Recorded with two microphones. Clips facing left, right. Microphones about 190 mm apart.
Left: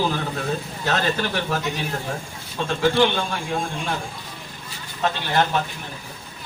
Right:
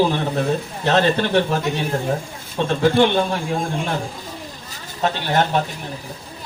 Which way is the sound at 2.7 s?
35° right (ahead or behind).